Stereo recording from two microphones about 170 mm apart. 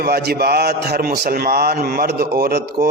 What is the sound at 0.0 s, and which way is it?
A man's voice, 70° right (ahead or behind).